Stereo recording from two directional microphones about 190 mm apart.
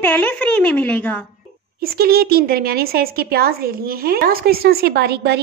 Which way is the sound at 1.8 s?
55° right (ahead or behind).